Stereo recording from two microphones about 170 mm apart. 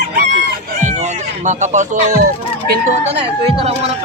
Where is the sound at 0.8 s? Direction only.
45° right (ahead or behind).